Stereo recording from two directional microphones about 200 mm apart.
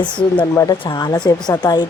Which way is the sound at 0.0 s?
25° left (ahead or behind).